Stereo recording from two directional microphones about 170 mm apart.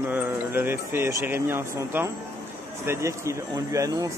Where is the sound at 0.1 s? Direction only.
10° right (ahead or behind).